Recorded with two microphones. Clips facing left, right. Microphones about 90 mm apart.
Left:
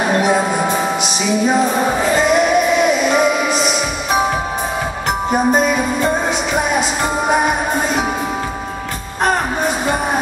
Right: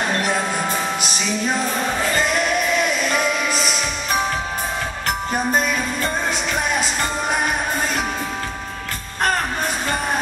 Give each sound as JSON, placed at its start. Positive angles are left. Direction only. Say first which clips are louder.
{"t": 0.0, "sound": "music", "louder": "left 6 dB", "side_deg": 10}
{"t": 5.3, "sound": "music", "louder": "left 7 dB", "side_deg": 5}
{"t": 9.2, "sound": "music", "louder": "left 4 dB", "side_deg": 5}